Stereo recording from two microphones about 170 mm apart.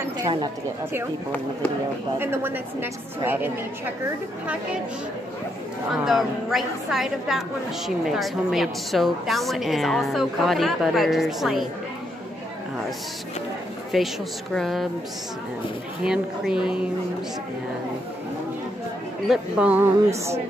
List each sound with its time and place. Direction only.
0.2 s speech: 25° right (ahead or behind)
2.1 s speech: 10° right (ahead or behind)
6.0 s a woman's voice: centre (ahead or behind)
13.9 s a woman's voice: centre (ahead or behind)
16.0 s a woman's voice: 5° right (ahead or behind)
19.2 s speech: 5° right (ahead or behind)